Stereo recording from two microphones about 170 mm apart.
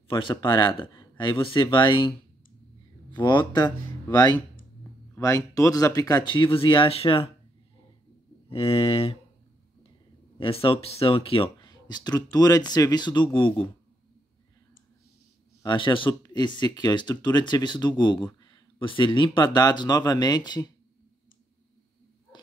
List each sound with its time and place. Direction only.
0.1 s speech: 30° left (ahead or behind)
3.2 s speech: 25° left (ahead or behind)
8.5 s a sound: 35° left (ahead or behind)
10.4 s speech: 35° left (ahead or behind)
15.6 s speech: 30° left (ahead or behind)